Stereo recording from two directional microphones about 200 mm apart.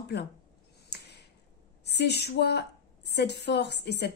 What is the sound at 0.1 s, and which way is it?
Speech, 55° left (ahead or behind).